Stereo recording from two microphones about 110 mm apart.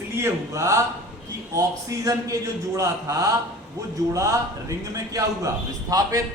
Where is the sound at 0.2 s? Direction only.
25° right (ahead or behind).